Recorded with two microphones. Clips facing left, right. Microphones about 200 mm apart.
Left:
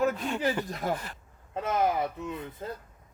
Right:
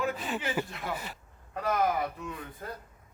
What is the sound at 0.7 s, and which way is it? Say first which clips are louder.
Speech: left 6 dB; 40° left (ahead or behind).